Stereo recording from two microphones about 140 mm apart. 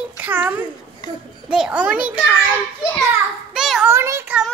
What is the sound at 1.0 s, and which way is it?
Speech, 30° left (ahead or behind).